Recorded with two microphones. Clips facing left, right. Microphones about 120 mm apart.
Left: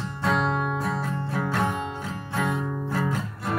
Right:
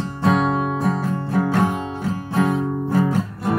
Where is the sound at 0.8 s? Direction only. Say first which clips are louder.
Right 6 dB; 40° right (ahead or behind).